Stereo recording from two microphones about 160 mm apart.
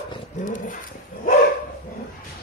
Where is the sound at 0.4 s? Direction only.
55° left (ahead or behind).